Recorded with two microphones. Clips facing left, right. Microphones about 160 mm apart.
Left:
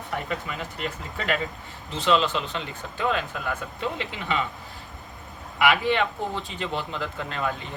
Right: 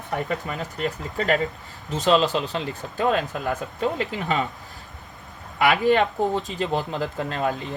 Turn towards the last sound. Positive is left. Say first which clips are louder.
# right 4 dB
turn(degrees=-35)  # may be behind; listen again after turning